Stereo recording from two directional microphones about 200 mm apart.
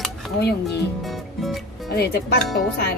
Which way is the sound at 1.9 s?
55° left (ahead or behind).